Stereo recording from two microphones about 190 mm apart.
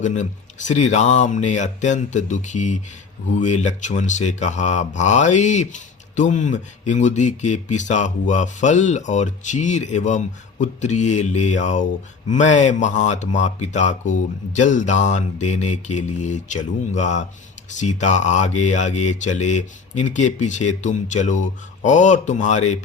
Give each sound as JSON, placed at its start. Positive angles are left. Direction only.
{"t": 0.0, "sound": "speech", "side_deg": 40}